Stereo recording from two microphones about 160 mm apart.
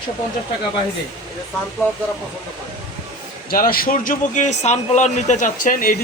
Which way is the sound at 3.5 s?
65° left (ahead or behind).